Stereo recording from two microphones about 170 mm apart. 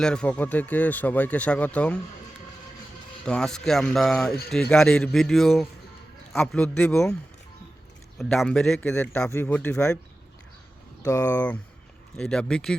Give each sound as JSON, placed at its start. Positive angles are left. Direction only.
{"t": 0.0, "sound": "speech", "side_deg": 5}
{"t": 3.2, "sound": "a man's voice", "side_deg": 5}
{"t": 8.2, "sound": "a man's voice", "side_deg": 0}
{"t": 11.0, "sound": "speech", "side_deg": 15}
{"t": 12.1, "sound": "a man's voice", "side_deg": 5}